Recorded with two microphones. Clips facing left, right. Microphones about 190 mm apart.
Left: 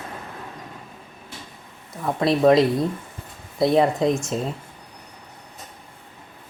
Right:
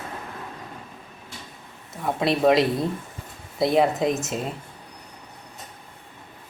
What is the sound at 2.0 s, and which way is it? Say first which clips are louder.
Speech: left 3 dB; centre (ahead or behind).